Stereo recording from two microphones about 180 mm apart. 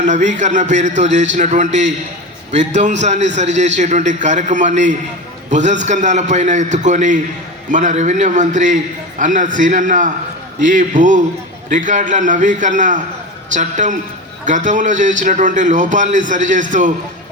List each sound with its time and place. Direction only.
0.0 s a man's voice: 40° right (ahead or behind)